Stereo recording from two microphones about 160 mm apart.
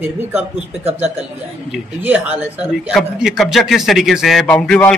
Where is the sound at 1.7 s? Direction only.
10° right (ahead or behind).